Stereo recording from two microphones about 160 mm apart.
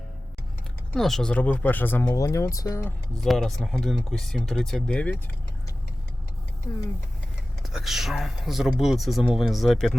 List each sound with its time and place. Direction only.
0.9 s speech: centre (ahead or behind); by 2.9 s 20° left (ahead or behind)
3.2 s speech: centre (ahead or behind)
6.7 s speech: 25° left (ahead or behind)
7.7 s speech: centre (ahead or behind)